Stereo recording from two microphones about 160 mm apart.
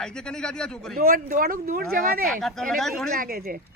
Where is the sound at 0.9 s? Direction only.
60° right (ahead or behind).